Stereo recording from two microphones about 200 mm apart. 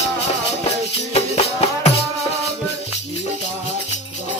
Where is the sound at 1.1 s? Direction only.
30° left (ahead or behind).